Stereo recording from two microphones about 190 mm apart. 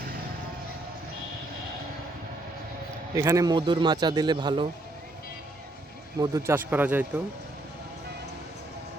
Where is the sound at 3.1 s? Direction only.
15° right (ahead or behind).